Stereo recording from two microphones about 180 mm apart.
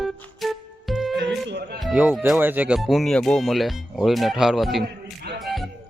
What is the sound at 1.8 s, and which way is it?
Speech, 5° right (ahead or behind).